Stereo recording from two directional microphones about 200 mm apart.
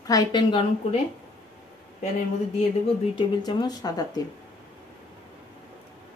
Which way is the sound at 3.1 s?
20° left (ahead or behind).